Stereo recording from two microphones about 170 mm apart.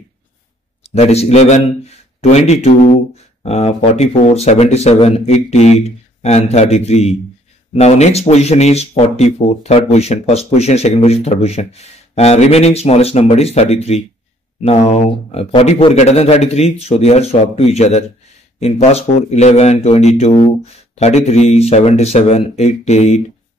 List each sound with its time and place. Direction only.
0.8 s speech: 40° left (ahead or behind)